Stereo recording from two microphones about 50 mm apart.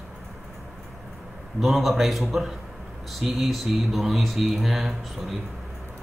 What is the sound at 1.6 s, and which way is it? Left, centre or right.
Speech, centre.